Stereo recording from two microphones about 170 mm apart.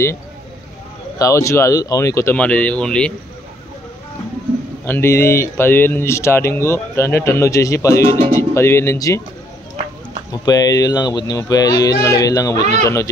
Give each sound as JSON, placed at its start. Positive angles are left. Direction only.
{"t": 1.1, "sound": "speech", "side_deg": 20}
{"t": 4.8, "sound": "speech", "side_deg": 15}
{"t": 10.4, "sound": "speech", "side_deg": 20}